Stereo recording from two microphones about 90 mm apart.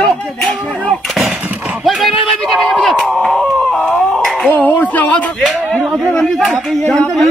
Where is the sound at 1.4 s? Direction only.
20° right (ahead or behind).